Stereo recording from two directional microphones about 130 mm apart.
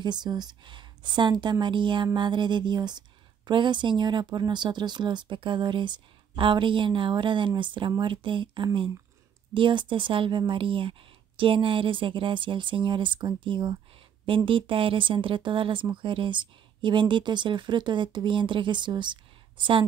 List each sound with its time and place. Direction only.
0.0 s speech: 35° right (ahead or behind)